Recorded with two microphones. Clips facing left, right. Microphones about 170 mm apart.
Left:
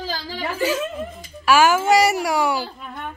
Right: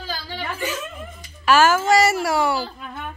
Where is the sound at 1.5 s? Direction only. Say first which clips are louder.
Left 1 dB; 10° left (ahead or behind).